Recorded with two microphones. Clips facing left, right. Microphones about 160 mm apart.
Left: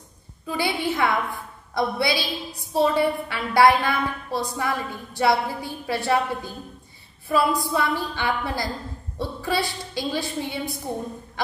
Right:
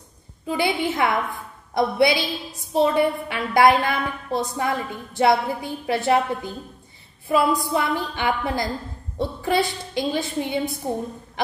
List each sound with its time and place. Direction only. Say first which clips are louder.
0.5 s a woman's voice: right 2 dB; 20° right (ahead or behind)